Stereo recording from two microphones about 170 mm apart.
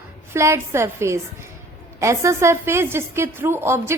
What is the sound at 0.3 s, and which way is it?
A woman's voice, 15° right (ahead or behind).